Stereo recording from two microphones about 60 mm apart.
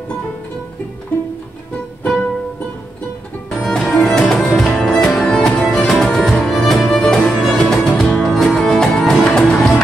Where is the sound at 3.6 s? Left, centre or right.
Centre.